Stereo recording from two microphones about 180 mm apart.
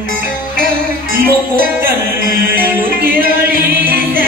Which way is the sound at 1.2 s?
55° right (ahead or behind).